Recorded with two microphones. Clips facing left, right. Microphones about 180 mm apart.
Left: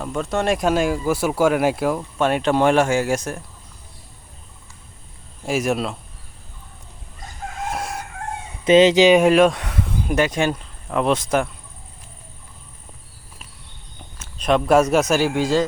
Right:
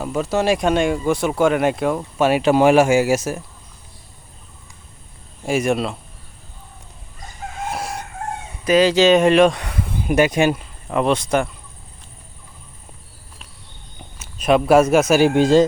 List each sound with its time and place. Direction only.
0.0 s speech: 5° right (ahead or behind)
5.5 s speech: centre (ahead or behind)
7.6 s chicken: centre (ahead or behind)
8.6 s speech: 25° left (ahead or behind); by 11.4 s centre (ahead or behind)
14.2 s speech: 5° right (ahead or behind)
15.4 s speech: 20° right (ahead or behind)